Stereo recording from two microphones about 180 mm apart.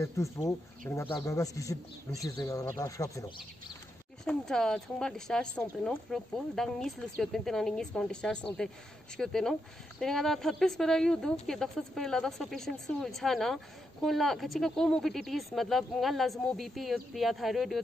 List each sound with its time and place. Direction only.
0.0 s speech: 15° left (ahead or behind)
4.2 s speech: 5° left (ahead or behind)